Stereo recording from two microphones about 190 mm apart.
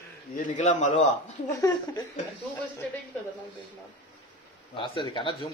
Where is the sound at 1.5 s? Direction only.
20° left (ahead or behind).